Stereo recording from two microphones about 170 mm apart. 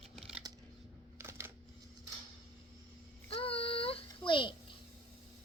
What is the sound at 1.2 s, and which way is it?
Camera, 15° right (ahead or behind).